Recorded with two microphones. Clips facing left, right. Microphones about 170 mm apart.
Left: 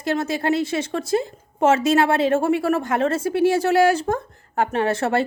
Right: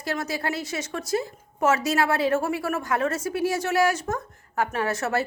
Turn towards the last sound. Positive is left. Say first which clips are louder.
# left 5 dB
turn(degrees=30)  # may be behind; listen again after turning